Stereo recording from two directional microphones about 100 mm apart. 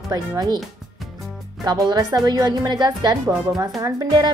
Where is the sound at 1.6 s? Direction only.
40° right (ahead or behind).